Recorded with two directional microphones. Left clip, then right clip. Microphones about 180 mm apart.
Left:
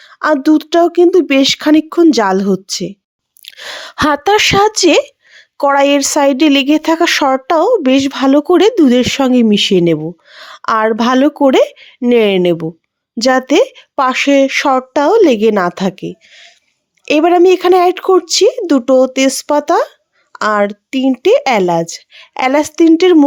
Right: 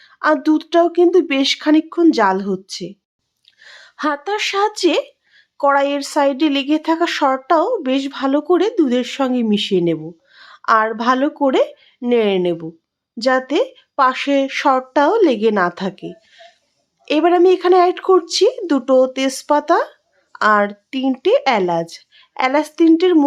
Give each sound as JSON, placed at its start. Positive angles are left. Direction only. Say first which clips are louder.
{"t": 0.0, "sound": "a sound", "louder": "left 3 dB", "side_deg": 30}
{"t": 0.3, "sound": "speech", "louder": "left 7 dB", "side_deg": 25}
{"t": 3.4, "sound": "speech", "louder": "left 16 dB", "side_deg": 55}